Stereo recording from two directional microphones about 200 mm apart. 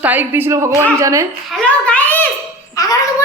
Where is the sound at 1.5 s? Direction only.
5° left (ahead or behind).